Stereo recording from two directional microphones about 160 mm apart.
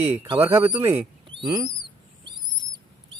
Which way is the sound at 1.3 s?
30° right (ahead or behind).